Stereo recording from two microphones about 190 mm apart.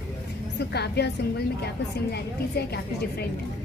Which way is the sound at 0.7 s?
60° left (ahead or behind).